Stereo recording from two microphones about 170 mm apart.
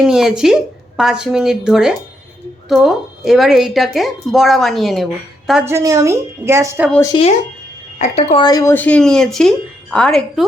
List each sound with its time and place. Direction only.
0.0 s a woman's voice: 5° right (ahead or behind)
5.6 s a woman's voice: 20° right (ahead or behind)
7.1 s a woman's voice: 30° left (ahead or behind)
8.4 s a woman's voice: 20° left (ahead or behind); by 10.4 s 5° left (ahead or behind)